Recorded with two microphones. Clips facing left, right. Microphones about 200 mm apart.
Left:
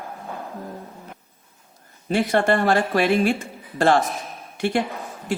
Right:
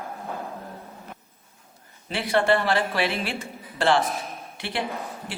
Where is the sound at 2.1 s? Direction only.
45° left (ahead or behind).